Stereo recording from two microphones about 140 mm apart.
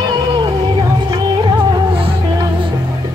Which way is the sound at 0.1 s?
30° right (ahead or behind).